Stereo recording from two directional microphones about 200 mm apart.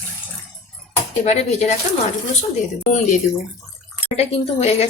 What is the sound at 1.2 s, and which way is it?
Speech, 35° left (ahead or behind).